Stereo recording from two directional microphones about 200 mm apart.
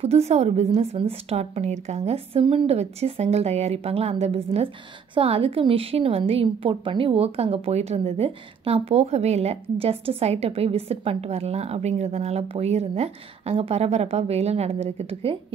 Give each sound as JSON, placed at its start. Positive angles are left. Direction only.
{"t": 0.0, "sound": "a woman's voice", "side_deg": -30}